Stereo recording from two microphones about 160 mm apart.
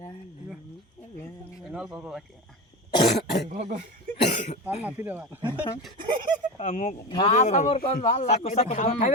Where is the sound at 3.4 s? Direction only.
40° right (ahead or behind).